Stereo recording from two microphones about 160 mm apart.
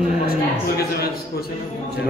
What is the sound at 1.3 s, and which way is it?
Speech, 80° left.